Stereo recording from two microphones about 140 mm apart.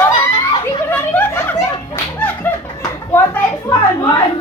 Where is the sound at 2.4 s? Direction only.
15° left (ahead or behind).